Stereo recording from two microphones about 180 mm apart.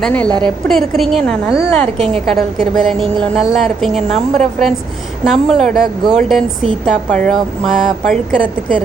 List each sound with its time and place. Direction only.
0.0 s a woman's voice: 10° left (ahead or behind)
0.3 s a woman's voice: 25° right (ahead or behind)
0.7 s speech: centre (ahead or behind)
5.2 s speech: centre (ahead or behind)